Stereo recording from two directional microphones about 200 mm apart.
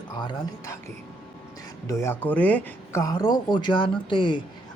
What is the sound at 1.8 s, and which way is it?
Speech, 15° left (ahead or behind).